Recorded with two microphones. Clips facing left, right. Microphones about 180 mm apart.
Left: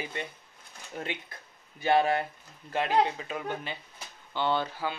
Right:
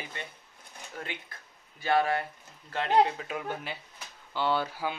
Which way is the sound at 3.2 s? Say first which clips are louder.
Left 1 dB; 5° right (ahead or behind).